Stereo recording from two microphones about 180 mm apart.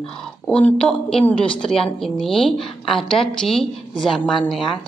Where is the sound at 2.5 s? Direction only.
30° left (ahead or behind).